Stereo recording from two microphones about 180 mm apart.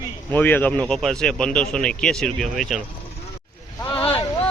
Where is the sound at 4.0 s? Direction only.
30° left (ahead or behind).